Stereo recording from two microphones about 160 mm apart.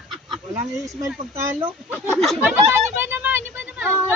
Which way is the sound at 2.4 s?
15° right (ahead or behind).